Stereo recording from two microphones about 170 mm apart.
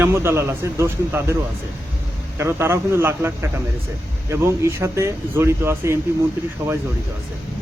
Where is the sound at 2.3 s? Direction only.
15° right (ahead or behind).